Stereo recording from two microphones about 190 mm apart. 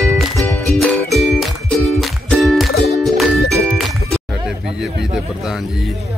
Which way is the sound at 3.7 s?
Centre (ahead or behind).